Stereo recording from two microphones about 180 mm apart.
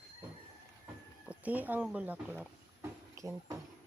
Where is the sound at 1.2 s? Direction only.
5° right (ahead or behind).